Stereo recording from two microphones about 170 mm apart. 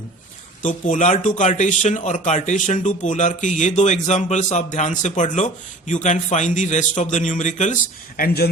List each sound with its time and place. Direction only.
0.6 s speech: 50° left (ahead or behind); by 8.4 s 65° left (ahead or behind)